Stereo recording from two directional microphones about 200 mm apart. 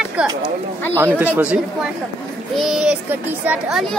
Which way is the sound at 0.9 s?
10° right (ahead or behind).